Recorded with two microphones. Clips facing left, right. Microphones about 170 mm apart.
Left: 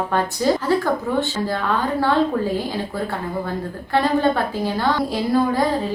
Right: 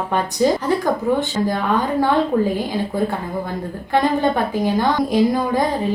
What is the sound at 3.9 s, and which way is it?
A woman's voice, 15° right (ahead or behind).